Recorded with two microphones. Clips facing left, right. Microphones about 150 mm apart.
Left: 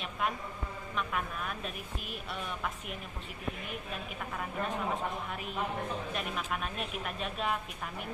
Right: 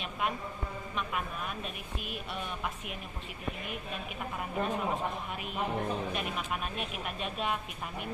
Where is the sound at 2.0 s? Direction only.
Centre (ahead or behind).